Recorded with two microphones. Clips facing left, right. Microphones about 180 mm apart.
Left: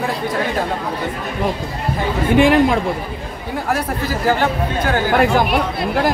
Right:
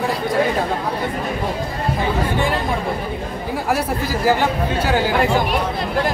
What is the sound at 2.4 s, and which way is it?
Speech, 90° left.